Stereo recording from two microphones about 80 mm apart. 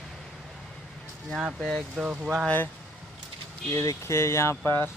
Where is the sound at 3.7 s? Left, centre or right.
Left.